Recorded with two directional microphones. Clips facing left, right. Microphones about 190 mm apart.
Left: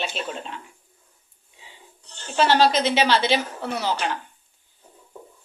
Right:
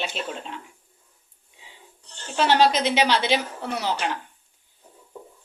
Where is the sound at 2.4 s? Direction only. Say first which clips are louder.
Even; 15° right (ahead or behind).